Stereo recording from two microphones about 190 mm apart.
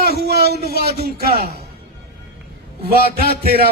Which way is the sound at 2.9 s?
55° right (ahead or behind).